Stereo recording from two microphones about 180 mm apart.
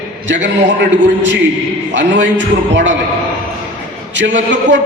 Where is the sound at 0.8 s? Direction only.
80° right.